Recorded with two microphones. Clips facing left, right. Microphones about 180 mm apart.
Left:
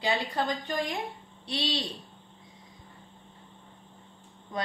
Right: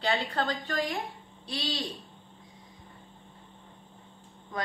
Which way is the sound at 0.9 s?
20° left (ahead or behind).